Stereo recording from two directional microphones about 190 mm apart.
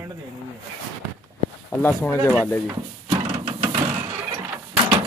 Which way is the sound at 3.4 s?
30° right (ahead or behind).